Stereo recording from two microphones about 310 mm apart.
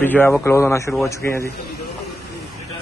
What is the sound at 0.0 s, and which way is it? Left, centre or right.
Speech, centre.